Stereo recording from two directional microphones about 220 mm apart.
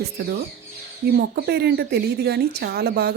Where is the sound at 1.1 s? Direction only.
45° right (ahead or behind).